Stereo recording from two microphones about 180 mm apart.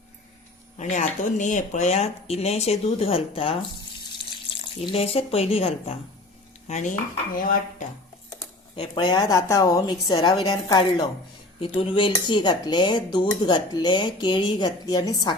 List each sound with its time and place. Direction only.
0.8 s speech: 40° left (ahead or behind)
4.9 s speech: 35° left (ahead or behind); by 7.9 s 50° left (ahead or behind)
8.7 s speech: 25° left (ahead or behind)